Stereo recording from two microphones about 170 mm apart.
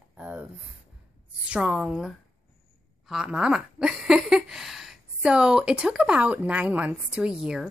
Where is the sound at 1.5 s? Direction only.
5° right (ahead or behind).